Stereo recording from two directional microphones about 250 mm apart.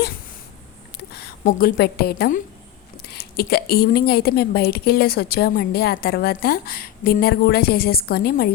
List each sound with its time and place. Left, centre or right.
1.1 s a woman's voice: left